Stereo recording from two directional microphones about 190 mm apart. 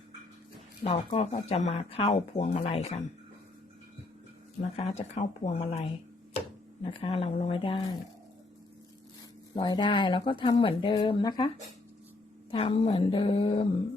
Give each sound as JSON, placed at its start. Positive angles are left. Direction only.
{"t": 0.9, "sound": "speech", "side_deg": 30}
{"t": 4.8, "sound": "speech", "side_deg": 35}
{"t": 9.6, "sound": "speech", "side_deg": 25}